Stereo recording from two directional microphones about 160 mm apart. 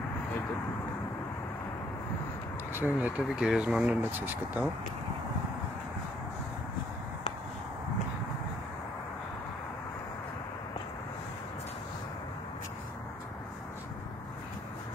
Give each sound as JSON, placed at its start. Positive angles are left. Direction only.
{"t": 2.7, "sound": "speech", "side_deg": -10}